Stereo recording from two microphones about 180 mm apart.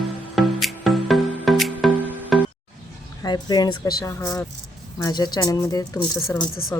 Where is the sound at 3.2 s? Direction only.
20° left (ahead or behind).